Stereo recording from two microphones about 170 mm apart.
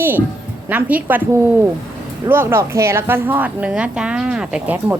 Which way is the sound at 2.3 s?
15° right (ahead or behind).